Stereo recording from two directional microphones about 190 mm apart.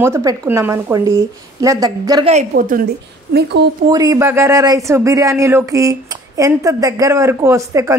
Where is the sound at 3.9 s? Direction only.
20° right (ahead or behind).